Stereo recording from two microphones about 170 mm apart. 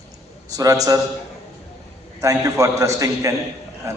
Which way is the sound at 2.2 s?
20° right (ahead or behind).